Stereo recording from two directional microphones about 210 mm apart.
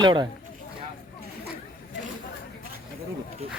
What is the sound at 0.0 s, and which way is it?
Speech, 20° right (ahead or behind).